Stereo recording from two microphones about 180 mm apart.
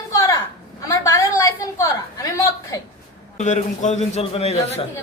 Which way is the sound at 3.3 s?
40° left (ahead or behind).